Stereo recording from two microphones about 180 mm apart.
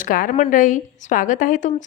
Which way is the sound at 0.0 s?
50° left (ahead or behind).